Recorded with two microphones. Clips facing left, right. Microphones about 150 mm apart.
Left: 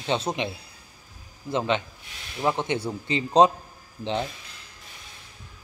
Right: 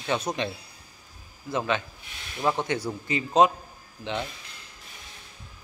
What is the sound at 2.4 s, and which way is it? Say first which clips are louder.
A man's voice: left 1 dB; 20° left (ahead or behind).